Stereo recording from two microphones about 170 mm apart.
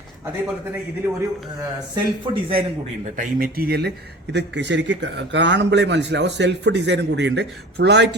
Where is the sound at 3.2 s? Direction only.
55° right (ahead or behind).